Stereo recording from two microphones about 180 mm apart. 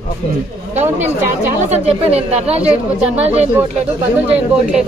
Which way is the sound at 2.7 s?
5° right (ahead or behind).